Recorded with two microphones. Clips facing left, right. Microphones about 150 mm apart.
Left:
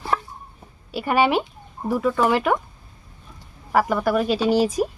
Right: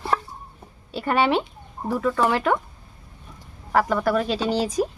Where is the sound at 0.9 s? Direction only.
10° left (ahead or behind).